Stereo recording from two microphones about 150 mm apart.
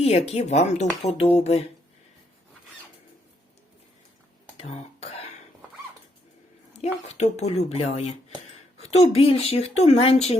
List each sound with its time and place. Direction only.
0.0 s speech: 45° left (ahead or behind)
4.5 s throat clearing: 45° left (ahead or behind)
6.7 s speech: 50° left (ahead or behind)